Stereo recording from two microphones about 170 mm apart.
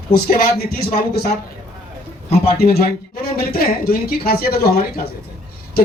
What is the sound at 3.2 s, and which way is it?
Speech, 65° left (ahead or behind).